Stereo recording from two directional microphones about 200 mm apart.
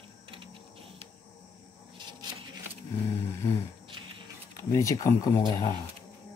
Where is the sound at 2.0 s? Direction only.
20° right (ahead or behind).